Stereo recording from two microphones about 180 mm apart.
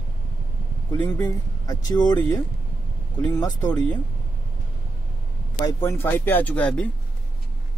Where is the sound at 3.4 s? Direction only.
20° left (ahead or behind).